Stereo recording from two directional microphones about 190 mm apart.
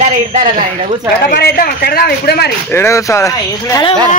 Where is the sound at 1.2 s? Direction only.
55° left (ahead or behind).